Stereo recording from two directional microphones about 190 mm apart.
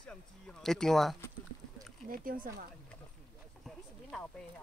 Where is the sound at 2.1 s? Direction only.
50° right (ahead or behind).